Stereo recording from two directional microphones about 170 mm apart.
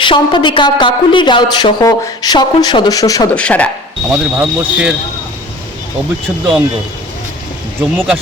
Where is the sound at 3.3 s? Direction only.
5° left (ahead or behind).